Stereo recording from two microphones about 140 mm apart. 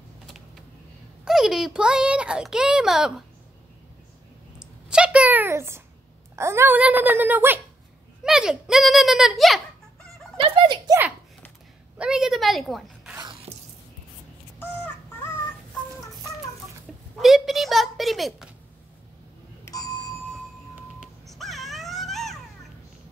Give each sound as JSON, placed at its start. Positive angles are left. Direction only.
{"t": 1.2, "sound": "a child's voice", "side_deg": -5}
{"t": 4.6, "sound": "a sound", "side_deg": -5}
{"t": 6.3, "sound": "speech", "side_deg": -20}
{"t": 10.3, "sound": "a sound", "side_deg": -40}
{"t": 12.0, "sound": "a woman's voice", "side_deg": -5}
{"t": 13.5, "sound": "music", "side_deg": -45}
{"t": 17.2, "sound": "a child's voice", "side_deg": 0}
{"t": 19.6, "sound": "bicycle bell", "side_deg": 25}
{"t": 21.3, "sound": "baby cry", "side_deg": 0}